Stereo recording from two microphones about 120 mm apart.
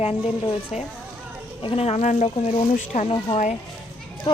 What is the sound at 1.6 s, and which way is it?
Speech, 60° left (ahead or behind).